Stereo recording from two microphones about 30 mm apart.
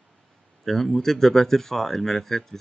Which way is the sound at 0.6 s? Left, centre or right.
Centre.